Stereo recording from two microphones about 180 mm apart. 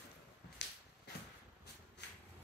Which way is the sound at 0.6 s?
75° left (ahead or behind).